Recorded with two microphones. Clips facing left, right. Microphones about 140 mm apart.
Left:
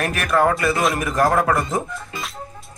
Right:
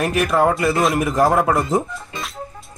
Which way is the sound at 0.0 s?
20° right (ahead or behind).